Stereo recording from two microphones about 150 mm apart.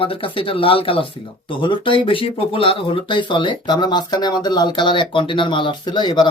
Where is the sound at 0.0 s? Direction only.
35° left (ahead or behind).